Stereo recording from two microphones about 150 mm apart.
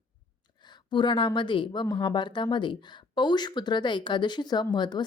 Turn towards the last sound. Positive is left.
turn(degrees=30)  # may be behind; listen again after turning